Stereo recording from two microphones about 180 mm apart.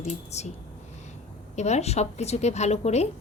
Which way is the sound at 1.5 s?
40° left (ahead or behind).